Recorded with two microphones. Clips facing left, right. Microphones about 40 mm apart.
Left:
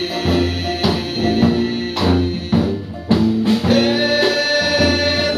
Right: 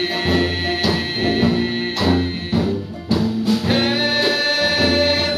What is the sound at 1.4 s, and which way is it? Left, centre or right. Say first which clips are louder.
Music: left 3 dB; right.